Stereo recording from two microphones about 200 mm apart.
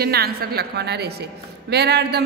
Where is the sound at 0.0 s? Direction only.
50° right (ahead or behind).